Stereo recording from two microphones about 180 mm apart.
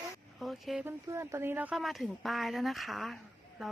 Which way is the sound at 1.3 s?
10° right (ahead or behind).